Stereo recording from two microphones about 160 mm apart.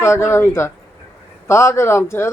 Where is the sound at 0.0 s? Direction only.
15° left (ahead or behind).